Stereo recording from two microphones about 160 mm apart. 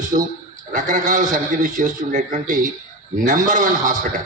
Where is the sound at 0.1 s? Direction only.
55° right (ahead or behind).